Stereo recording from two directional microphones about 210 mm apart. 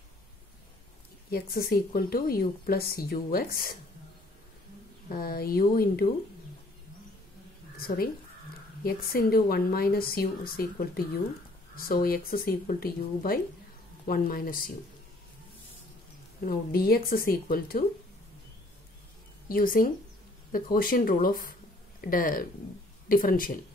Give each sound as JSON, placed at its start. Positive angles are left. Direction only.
{"t": 1.3, "sound": "a woman's voice", "side_deg": 45}
{"t": 5.1, "sound": "a woman's voice", "side_deg": 45}
{"t": 7.7, "sound": "a woman's voice", "side_deg": 45}
{"t": 16.4, "sound": "a woman's voice", "side_deg": 45}
{"t": 19.4, "sound": "a woman's voice", "side_deg": 40}